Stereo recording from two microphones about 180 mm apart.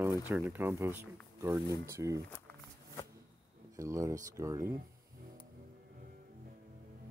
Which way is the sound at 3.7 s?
15° right (ahead or behind).